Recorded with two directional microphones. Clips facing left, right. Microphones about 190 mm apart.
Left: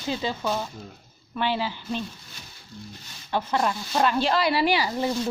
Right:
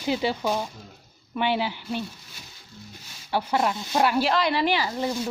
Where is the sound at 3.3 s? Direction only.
10° right (ahead or behind).